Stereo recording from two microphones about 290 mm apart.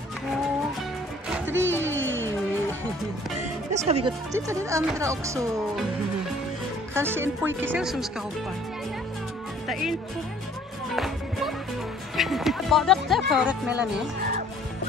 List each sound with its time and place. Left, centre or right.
1.3 s music: centre
1.8 s music: right
3.7 s speech: right
6.9 s speech: centre
9.7 s speech: centre
11.0 s music: centre
12.2 s speech: centre